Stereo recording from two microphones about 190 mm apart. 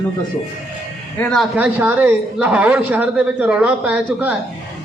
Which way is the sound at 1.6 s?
10° right (ahead or behind).